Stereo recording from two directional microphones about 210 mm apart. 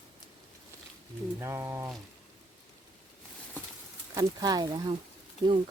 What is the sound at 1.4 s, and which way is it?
Speech, 10° right (ahead or behind).